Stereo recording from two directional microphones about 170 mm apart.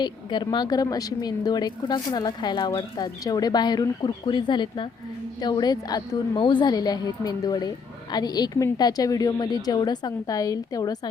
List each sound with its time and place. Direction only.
0.0 s a woman's voice: 25° left (ahead or behind)